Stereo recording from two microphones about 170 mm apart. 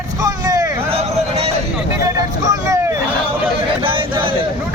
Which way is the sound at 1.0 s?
35° right (ahead or behind).